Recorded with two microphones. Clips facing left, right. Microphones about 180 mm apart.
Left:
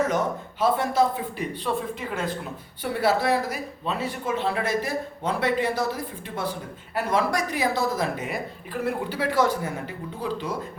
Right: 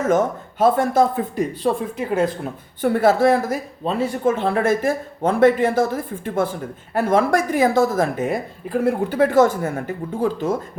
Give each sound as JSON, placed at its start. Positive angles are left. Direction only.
{"t": 0.1, "sound": "speech", "side_deg": -50}